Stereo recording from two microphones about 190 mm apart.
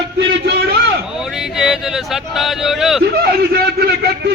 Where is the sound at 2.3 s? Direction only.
Centre (ahead or behind).